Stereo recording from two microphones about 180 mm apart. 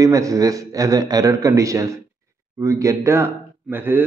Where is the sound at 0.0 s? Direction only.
20° right (ahead or behind).